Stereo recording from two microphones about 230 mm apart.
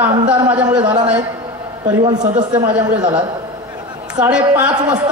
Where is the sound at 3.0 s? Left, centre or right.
Centre.